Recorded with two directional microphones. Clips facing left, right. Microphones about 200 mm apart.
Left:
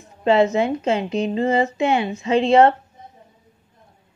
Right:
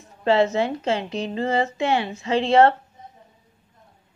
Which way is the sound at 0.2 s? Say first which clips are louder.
Left 3 dB; 20° left (ahead or behind).